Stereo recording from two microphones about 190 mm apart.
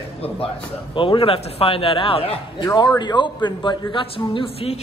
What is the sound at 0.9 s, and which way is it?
A woman's voice, 25° left (ahead or behind).